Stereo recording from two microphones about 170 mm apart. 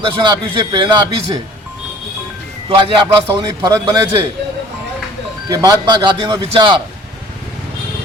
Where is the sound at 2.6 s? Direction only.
30° right (ahead or behind).